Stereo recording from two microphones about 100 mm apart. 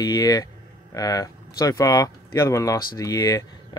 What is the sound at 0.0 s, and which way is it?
Speech, 40° left (ahead or behind).